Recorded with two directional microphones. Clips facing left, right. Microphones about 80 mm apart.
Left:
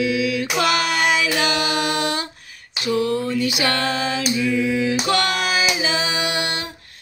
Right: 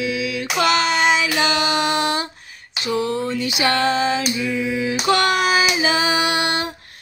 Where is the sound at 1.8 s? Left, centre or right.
Right.